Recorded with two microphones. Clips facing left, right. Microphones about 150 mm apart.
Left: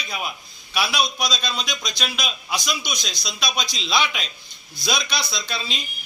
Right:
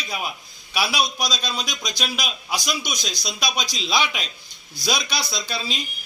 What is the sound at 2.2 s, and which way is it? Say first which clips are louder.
A man's voice: even; 40° right (ahead or behind).